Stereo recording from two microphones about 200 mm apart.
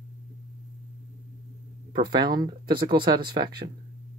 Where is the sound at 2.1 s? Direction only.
20° right (ahead or behind).